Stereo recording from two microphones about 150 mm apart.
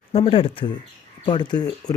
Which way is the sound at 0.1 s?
40° left (ahead or behind).